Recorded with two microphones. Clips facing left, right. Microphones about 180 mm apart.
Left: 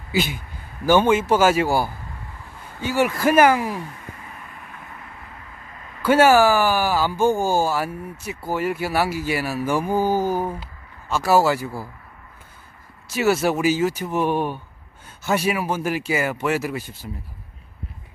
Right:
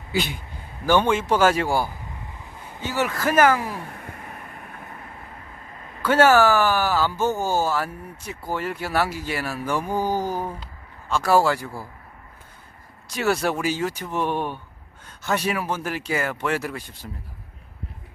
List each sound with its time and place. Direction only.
0.1 s a man's voice: 5° left (ahead or behind)
3.7 s a sound: 55° right (ahead or behind)
4.5 s vehicle: 40° right (ahead or behind)
6.0 s speech: 10° left (ahead or behind)
13.1 s speech: 5° left (ahead or behind)